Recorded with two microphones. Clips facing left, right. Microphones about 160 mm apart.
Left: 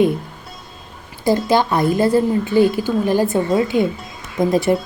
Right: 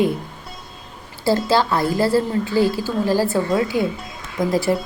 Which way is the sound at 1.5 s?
20° left (ahead or behind).